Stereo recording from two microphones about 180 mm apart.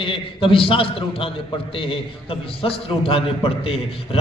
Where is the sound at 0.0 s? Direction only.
30° left (ahead or behind).